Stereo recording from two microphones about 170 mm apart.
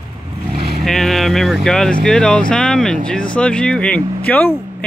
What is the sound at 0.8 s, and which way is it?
Speech, centre (ahead or behind).